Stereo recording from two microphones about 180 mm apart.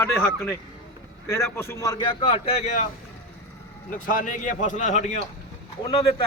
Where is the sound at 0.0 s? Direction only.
10° left (ahead or behind).